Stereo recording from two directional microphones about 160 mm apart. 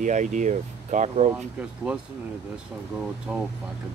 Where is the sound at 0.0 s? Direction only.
50° right (ahead or behind).